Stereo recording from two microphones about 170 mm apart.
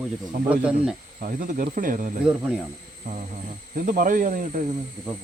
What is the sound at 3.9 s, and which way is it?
Speech, 55° right (ahead or behind).